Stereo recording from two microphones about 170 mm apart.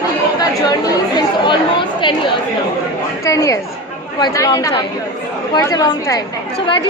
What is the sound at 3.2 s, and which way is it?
A woman's voice, 20° left (ahead or behind).